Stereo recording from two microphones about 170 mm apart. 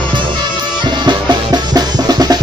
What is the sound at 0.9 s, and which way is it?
Music, 25° right (ahead or behind).